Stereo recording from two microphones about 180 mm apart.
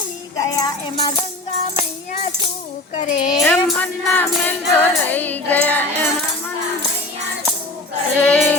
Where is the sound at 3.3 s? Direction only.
10° left (ahead or behind).